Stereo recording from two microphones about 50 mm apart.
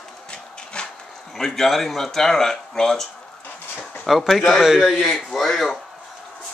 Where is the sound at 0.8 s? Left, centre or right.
Centre.